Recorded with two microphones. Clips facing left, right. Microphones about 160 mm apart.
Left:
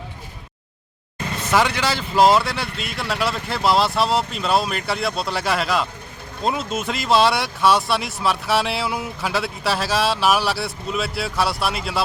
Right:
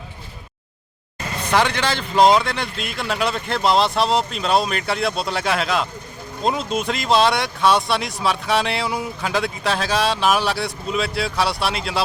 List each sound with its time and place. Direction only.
1.5 s speech: 10° left (ahead or behind)